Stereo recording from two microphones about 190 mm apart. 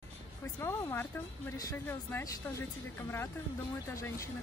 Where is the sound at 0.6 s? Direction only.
15° left (ahead or behind).